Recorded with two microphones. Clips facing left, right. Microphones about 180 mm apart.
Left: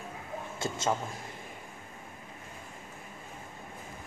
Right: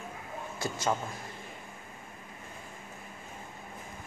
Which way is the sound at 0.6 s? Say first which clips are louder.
Even; 25° left (ahead or behind).